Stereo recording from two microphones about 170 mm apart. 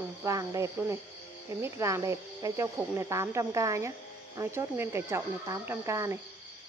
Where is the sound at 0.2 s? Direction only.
20° right (ahead or behind).